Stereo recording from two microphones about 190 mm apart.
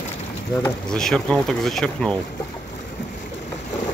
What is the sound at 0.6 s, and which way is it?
Speech, 5° left (ahead or behind).